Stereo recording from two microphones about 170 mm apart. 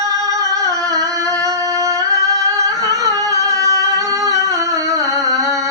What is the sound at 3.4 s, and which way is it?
Singing, 20° right (ahead or behind).